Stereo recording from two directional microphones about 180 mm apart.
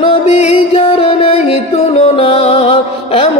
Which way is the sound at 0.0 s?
30° left (ahead or behind).